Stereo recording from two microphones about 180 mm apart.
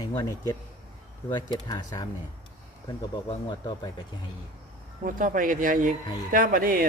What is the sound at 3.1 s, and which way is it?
Speech, 25° left (ahead or behind).